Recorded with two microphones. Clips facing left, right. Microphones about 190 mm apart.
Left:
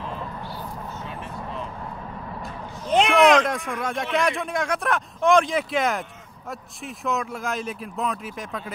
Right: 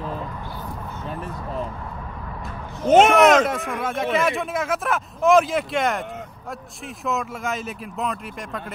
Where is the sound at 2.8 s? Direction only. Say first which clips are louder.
Right 4 dB; 45° right (ahead or behind).